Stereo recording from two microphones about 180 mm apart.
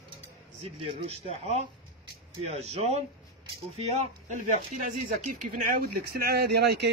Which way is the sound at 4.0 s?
45° right (ahead or behind).